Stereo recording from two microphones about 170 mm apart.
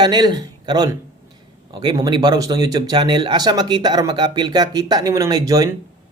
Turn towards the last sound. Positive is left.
turn(degrees=-20)  # may be behind; listen again after turning